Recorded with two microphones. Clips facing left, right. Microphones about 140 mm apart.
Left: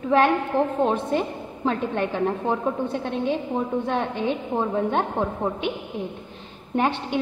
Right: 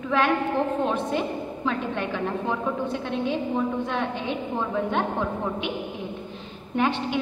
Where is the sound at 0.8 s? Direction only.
40° left (ahead or behind).